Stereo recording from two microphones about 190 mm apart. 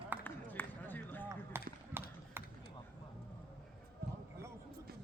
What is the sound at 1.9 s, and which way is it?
Run, 10° right (ahead or behind).